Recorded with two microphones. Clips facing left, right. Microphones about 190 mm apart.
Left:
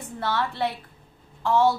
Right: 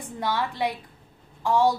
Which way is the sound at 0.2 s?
15° right (ahead or behind).